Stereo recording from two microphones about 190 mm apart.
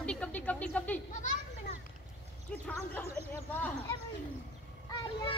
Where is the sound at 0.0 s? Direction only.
5° left (ahead or behind).